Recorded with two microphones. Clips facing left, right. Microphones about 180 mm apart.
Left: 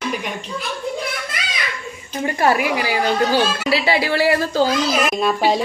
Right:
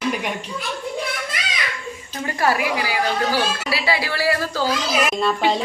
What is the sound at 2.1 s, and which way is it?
Speech, 25° left (ahead or behind).